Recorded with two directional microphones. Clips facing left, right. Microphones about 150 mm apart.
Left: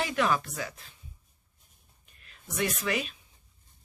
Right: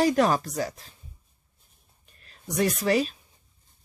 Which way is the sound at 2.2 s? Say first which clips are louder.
Right 6 dB; 35° right (ahead or behind).